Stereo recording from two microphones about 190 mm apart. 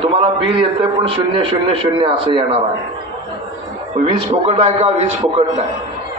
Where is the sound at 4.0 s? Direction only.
30° right (ahead or behind).